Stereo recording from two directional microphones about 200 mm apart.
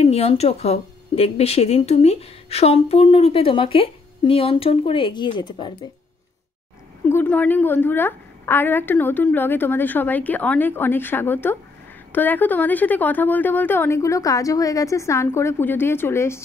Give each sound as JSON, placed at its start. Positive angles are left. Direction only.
{"t": 0.0, "sound": "speech", "side_deg": 30}
{"t": 7.1, "sound": "a woman's voice", "side_deg": 10}